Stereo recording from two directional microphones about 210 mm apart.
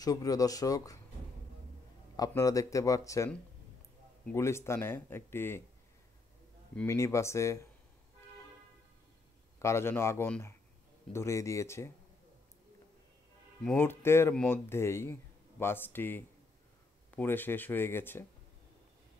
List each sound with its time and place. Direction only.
0.0 s speech: 15° left (ahead or behind)
2.1 s speech: 15° left (ahead or behind)
4.3 s speech: 10° left (ahead or behind)
6.7 s speech: 10° left (ahead or behind)
9.6 s speech: 15° left (ahead or behind)
13.7 s speech: 10° left (ahead or behind)